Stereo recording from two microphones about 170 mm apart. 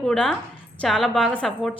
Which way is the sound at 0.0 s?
Centre (ahead or behind).